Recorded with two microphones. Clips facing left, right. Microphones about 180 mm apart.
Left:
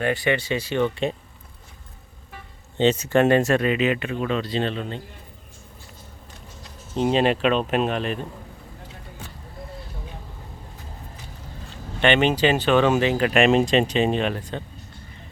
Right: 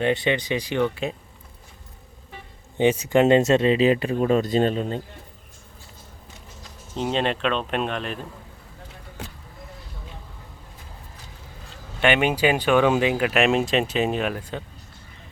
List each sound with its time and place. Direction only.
0.0 s speech: 20° right (ahead or behind)
2.7 s speech: 10° right (ahead or behind); by 4.9 s 40° right (ahead or behind)
6.9 s speech: 5° left (ahead or behind)
11.9 s speech: 5° right (ahead or behind)